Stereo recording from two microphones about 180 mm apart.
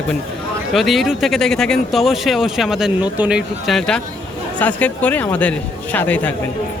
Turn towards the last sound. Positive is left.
turn(degrees=10)  # may be behind; listen again after turning